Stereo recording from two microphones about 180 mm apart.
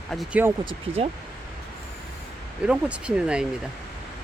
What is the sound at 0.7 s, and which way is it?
Speech, 35° right (ahead or behind).